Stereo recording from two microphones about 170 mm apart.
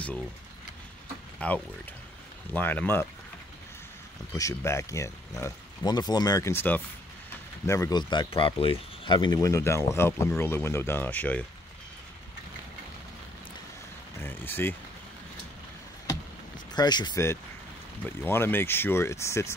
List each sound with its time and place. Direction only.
1.4 s speech: 10° left (ahead or behind)
4.4 s speech: 20° left (ahead or behind)
14.2 s speech: 10° left (ahead or behind)
16.7 s speech: 25° left (ahead or behind)